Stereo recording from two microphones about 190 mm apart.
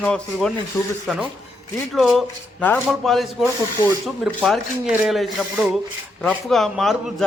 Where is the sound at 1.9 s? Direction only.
Centre (ahead or behind).